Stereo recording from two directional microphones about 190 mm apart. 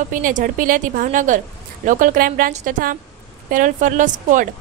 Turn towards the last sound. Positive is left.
turn(degrees=-45)  # may be behind; listen again after turning